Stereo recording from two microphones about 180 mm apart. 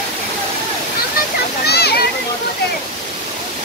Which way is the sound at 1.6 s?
65° left (ahead or behind).